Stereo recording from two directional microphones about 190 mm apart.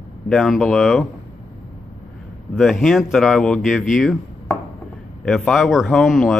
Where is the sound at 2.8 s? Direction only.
Centre (ahead or behind).